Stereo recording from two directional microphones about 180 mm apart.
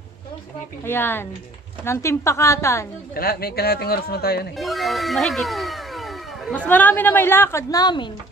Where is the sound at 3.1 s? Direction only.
60° left (ahead or behind).